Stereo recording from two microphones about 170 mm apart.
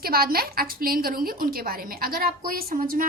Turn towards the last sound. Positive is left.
turn(degrees=-55)  # may be behind; listen again after turning